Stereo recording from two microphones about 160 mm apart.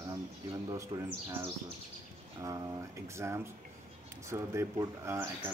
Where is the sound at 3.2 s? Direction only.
15° right (ahead or behind).